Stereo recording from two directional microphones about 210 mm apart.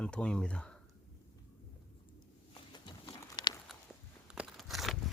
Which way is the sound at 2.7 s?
20° left (ahead or behind).